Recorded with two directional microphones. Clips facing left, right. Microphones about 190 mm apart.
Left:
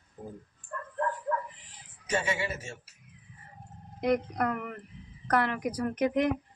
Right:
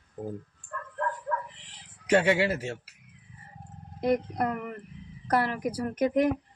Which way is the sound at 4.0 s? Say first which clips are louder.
Right 1 dB; 30° right (ahead or behind).